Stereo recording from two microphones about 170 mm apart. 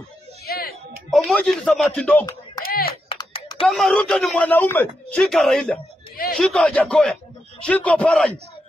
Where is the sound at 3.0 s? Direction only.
30° left (ahead or behind).